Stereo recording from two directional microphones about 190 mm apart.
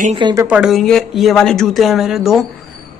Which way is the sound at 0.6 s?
Centre (ahead or behind).